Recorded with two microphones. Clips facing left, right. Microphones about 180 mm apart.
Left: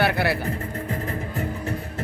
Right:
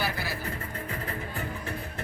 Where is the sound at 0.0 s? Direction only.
65° left (ahead or behind).